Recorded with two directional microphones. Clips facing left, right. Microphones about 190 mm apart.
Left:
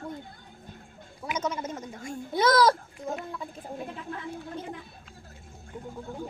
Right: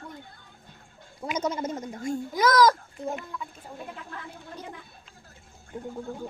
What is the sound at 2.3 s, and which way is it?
Speech, 30° left (ahead or behind).